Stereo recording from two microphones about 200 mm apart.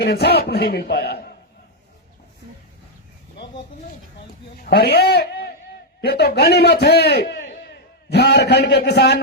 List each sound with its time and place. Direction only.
0.0 s a man's voice: 55° left (ahead or behind)
4.6 s a man's voice: 55° left (ahead or behind)